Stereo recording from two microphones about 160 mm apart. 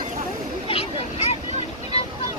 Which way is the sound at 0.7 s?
35° left (ahead or behind).